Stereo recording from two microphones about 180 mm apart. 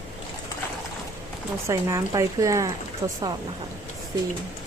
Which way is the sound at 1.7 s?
15° right (ahead or behind).